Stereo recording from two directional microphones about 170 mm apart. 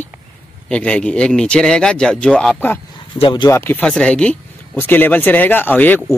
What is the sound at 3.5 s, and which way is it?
Speech, 15° left (ahead or behind).